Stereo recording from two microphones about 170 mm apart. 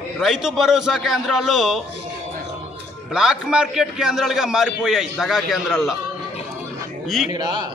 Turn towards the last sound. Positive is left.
turn(degrees=-25)  # may be behind; listen again after turning